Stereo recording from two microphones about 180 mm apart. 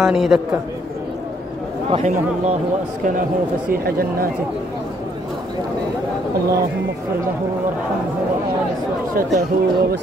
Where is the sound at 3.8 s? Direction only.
55° right (ahead or behind).